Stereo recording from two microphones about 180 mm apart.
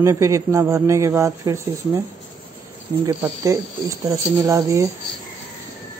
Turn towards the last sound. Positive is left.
turn(degrees=-15)  # may be behind; listen again after turning